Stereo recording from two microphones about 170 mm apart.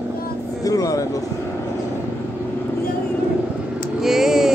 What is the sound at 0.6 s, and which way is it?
Music, 20° left (ahead or behind).